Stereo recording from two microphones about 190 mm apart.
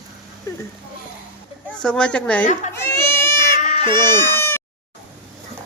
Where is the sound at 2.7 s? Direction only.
15° left (ahead or behind).